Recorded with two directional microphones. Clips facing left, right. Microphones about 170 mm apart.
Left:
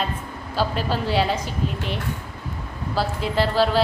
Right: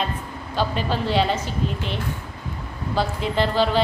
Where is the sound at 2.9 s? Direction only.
5° left (ahead or behind).